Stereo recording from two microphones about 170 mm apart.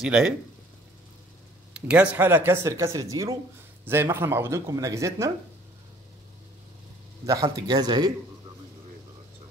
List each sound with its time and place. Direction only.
0.0 s speech: 5° right (ahead or behind)
1.7 s a sound: 5° right (ahead or behind)
2.1 s speech: 10° right (ahead or behind)
7.2 s a man's voice: 20° right (ahead or behind)